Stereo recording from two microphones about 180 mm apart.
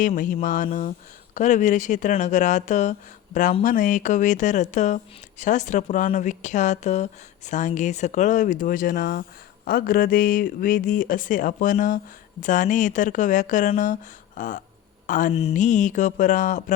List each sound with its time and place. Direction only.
0.4 s speech: 45° left (ahead or behind)